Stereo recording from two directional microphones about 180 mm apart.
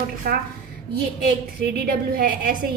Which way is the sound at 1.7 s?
55° right (ahead or behind).